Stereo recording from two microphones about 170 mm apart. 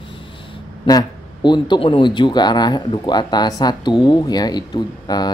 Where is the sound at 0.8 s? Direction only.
25° left (ahead or behind).